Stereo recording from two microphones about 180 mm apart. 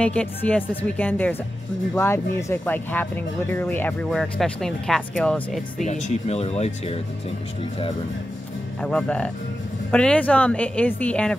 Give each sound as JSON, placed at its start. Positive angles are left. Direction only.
{"t": 0.0, "sound": "speech", "side_deg": 5}
{"t": 5.9, "sound": "speech", "side_deg": 40}
{"t": 8.8, "sound": "speech", "side_deg": 5}